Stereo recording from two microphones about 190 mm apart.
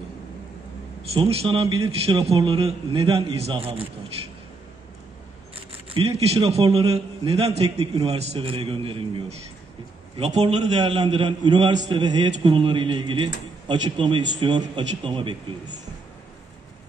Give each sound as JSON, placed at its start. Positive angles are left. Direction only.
{"t": 1.1, "sound": "a man's voice", "side_deg": -30}
{"t": 5.9, "sound": "a man's voice", "side_deg": -35}